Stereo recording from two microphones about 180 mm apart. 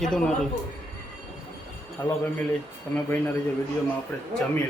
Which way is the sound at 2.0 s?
15° left (ahead or behind).